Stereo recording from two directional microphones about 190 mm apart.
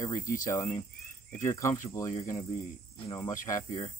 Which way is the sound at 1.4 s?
15° left (ahead or behind).